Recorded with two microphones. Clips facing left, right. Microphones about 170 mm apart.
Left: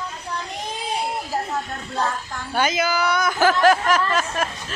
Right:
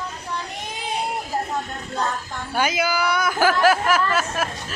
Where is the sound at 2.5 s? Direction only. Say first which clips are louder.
Left 1 dB; 10° right (ahead or behind).